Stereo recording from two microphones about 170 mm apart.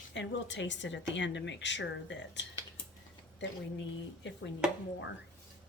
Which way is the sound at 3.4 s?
90° left.